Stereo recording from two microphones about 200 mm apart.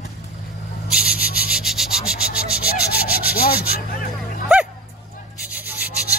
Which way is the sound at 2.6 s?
50° left (ahead or behind).